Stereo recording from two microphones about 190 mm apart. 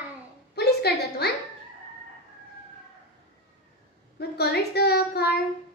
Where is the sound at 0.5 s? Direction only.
60° left (ahead or behind).